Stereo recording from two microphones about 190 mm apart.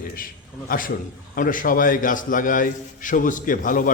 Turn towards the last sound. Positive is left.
turn(degrees=45)  # may be behind; listen again after turning